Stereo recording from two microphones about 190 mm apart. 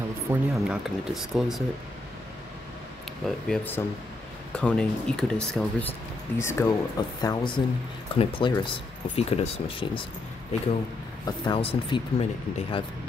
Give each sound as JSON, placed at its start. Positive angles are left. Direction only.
{"t": 0.3, "sound": "speech", "side_deg": -5}
{"t": 3.3, "sound": "speech", "side_deg": 5}
{"t": 11.2, "sound": "speech", "side_deg": 25}